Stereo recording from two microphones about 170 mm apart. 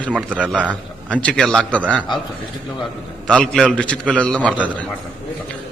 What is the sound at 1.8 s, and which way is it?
Speech, 10° right (ahead or behind).